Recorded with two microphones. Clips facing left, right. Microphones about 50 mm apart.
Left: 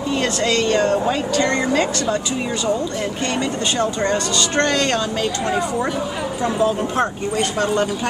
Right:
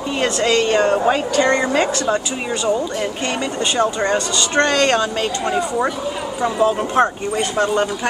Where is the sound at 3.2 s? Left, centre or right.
Centre.